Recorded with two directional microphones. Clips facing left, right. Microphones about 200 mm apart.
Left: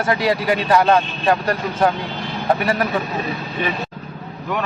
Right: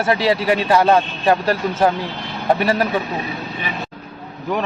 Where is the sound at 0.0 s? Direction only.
25° right (ahead or behind).